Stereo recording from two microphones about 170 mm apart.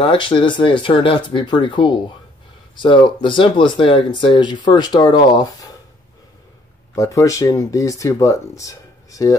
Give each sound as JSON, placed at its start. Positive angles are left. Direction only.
{"t": 0.0, "sound": "speech", "side_deg": 30}
{"t": 7.0, "sound": "speech", "side_deg": 20}